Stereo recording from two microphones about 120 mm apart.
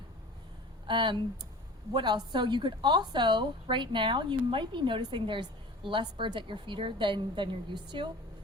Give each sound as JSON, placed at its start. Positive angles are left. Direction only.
{"t": 0.9, "sound": "a woman's voice", "side_deg": -40}